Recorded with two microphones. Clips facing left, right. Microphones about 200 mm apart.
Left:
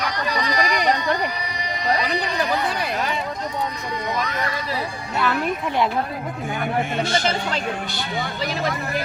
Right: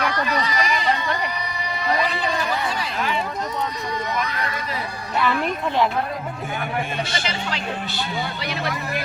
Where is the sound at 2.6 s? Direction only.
55° left (ahead or behind).